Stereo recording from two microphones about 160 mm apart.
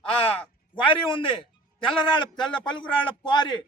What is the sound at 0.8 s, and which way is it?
Speech, 30° left (ahead or behind).